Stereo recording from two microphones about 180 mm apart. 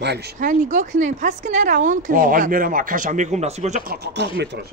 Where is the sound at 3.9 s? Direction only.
70° right (ahead or behind).